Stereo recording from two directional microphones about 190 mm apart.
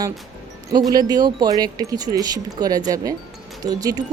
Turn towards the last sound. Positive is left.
turn(degrees=-20)  # may be behind; listen again after turning